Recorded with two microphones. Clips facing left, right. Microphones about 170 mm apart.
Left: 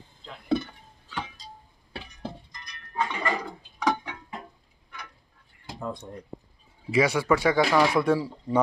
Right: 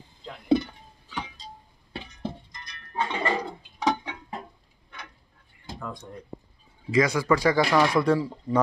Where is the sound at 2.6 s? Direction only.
30° right (ahead or behind).